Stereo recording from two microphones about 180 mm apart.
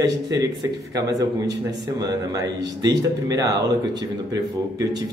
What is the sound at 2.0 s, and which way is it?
Speech, 20° right (ahead or behind).